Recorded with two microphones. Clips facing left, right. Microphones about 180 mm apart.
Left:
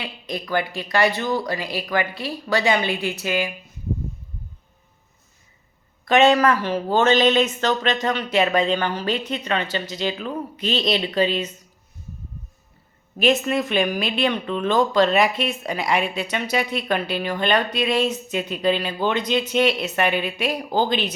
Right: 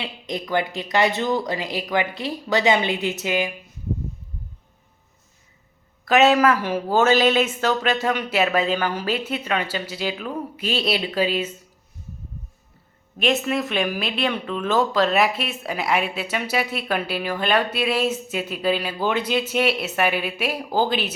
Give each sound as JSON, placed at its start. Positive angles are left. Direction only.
{"t": 0.0, "sound": "speech", "side_deg": -20}
{"t": 6.1, "sound": "speech", "side_deg": -5}
{"t": 13.1, "sound": "speech", "side_deg": 0}